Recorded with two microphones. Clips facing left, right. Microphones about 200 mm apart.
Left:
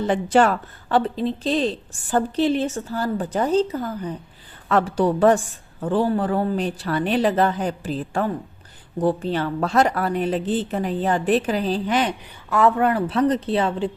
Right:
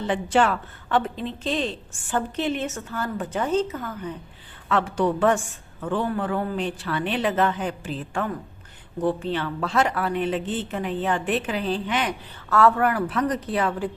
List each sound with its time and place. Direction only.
0.1 s a woman's voice: 40° left (ahead or behind)
12.5 s a woman's voice: 15° left (ahead or behind)